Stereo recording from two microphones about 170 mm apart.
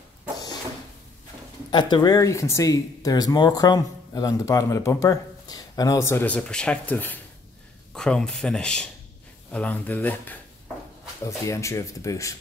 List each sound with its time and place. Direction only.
1.7 s speech: 25° left (ahead or behind)